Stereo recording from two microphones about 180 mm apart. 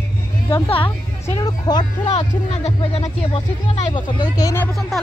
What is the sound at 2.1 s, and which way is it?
Speech, 35° left (ahead or behind).